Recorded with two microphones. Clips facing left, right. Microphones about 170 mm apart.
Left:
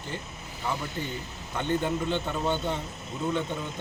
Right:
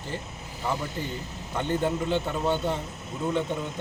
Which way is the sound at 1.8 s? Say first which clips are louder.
Right 2 dB; 5° right (ahead or behind).